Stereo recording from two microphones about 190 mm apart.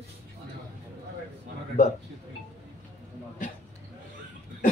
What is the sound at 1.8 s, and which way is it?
Speech, 40° left (ahead or behind).